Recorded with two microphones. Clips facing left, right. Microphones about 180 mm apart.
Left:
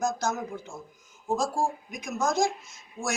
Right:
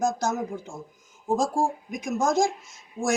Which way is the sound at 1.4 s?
15° right (ahead or behind).